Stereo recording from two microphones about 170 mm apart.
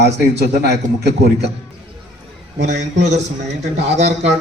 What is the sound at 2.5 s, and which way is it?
Speech, 85° right.